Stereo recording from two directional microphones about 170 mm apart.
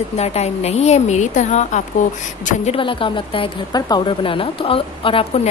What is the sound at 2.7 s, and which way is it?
Speech, 30° left (ahead or behind).